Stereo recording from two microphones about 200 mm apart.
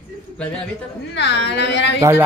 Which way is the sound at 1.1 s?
60° left (ahead or behind).